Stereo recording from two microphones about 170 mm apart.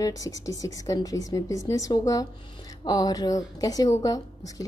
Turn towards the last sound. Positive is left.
turn(degrees=20)  # may be behind; listen again after turning